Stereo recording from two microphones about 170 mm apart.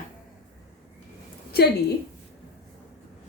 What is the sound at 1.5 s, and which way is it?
Speech, 65° left (ahead or behind).